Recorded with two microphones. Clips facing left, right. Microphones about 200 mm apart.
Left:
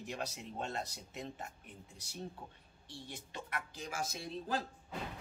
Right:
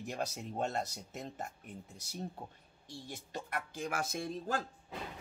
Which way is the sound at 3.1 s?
45° right (ahead or behind).